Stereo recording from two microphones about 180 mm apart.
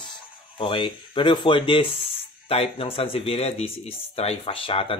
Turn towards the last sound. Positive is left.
turn(degrees=30)  # may be behind; listen again after turning